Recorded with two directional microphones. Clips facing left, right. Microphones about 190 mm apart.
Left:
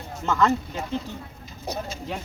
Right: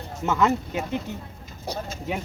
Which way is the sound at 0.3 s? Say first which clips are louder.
Even; 10° right (ahead or behind).